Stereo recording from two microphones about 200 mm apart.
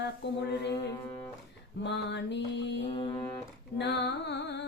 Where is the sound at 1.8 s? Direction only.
60° left (ahead or behind).